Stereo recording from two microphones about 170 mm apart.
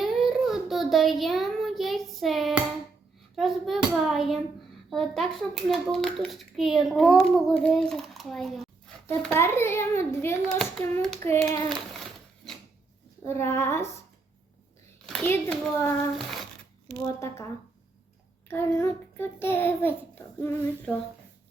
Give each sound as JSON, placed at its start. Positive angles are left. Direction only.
{"t": 0.0, "sound": "child singing", "side_deg": 0}
{"t": 3.3, "sound": "a child's voice", "side_deg": 0}
{"t": 9.0, "sound": "a child's voice", "side_deg": 15}
{"t": 13.2, "sound": "a child's voice", "side_deg": 15}
{"t": 15.0, "sound": "clapping", "side_deg": 0}
{"t": 15.3, "sound": "a child's voice", "side_deg": 10}
{"t": 16.1, "sound": "a sound", "side_deg": 0}
{"t": 17.2, "sound": "a child's voice", "side_deg": 15}
{"t": 18.4, "sound": "a child's voice", "side_deg": 15}